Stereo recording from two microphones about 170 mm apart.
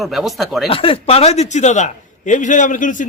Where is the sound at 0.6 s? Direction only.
30° left (ahead or behind).